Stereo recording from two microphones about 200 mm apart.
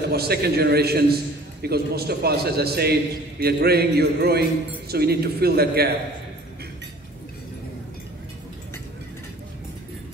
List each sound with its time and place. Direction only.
0.1 s a man's voice: 50° right (ahead or behind)